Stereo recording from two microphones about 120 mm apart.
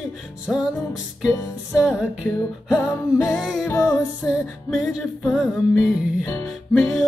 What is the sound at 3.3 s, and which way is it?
Music, centre (ahead or behind).